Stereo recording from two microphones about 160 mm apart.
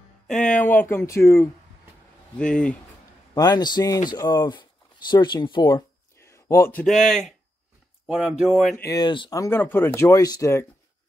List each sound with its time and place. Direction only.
0.3 s speech: 5° left (ahead or behind)
3.3 s speech: 25° left (ahead or behind)
6.8 s speech: centre (ahead or behind)
8.9 s speech: 30° left (ahead or behind)
9.4 s speech: 15° left (ahead or behind)